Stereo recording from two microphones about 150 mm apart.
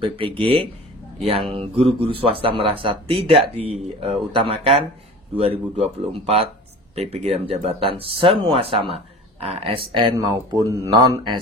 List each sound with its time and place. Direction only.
0.0 s speech: 35° right (ahead or behind)